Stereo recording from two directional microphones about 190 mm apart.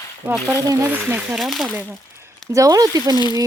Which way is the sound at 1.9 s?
15° right (ahead or behind).